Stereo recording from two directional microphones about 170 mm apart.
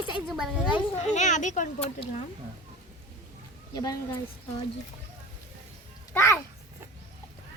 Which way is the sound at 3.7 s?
25° left (ahead or behind).